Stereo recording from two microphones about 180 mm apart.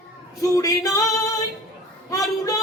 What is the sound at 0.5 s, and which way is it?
Female singing, 20° left (ahead or behind).